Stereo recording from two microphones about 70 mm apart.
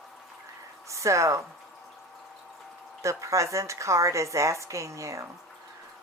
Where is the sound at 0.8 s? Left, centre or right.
Right.